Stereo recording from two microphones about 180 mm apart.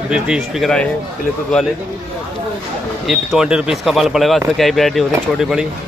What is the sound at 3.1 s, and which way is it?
Speech, centre (ahead or behind).